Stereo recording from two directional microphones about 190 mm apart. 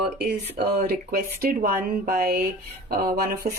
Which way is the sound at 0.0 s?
55° right (ahead or behind).